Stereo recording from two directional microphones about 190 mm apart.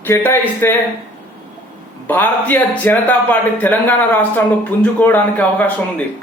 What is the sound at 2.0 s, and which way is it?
Speech, 10° left (ahead or behind).